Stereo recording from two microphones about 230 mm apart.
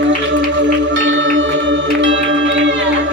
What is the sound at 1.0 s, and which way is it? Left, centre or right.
Music, right.